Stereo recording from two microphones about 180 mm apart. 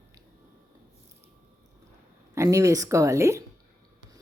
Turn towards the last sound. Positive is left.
turn(degrees=-15)  # may be behind; listen again after turning